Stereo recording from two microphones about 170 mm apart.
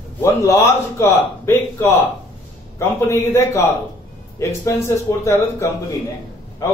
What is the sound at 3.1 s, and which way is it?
Speech, 15° left (ahead or behind).